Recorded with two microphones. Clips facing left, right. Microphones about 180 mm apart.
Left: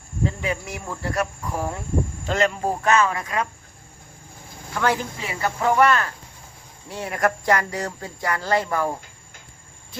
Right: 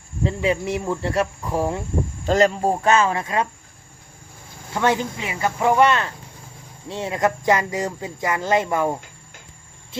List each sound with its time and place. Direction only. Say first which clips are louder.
0.3 s speech: right 8 dB; 30° right (ahead or behind)
4.7 s speech: right 2 dB; 20° right (ahead or behind)